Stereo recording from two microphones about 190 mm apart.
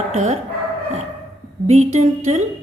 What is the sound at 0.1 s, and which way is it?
Speech, 40° right (ahead or behind).